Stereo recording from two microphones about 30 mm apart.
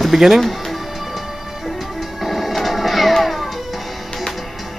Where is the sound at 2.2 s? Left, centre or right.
Centre.